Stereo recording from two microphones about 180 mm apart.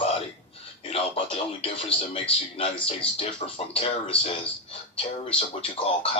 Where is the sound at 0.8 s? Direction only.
30° left (ahead or behind).